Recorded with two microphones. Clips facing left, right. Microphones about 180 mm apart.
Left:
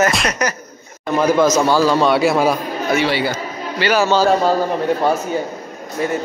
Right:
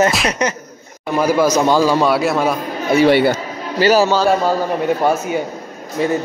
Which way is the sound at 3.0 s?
55° right (ahead or behind).